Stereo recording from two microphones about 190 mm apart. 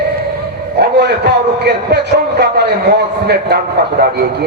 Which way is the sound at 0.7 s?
60° right (ahead or behind).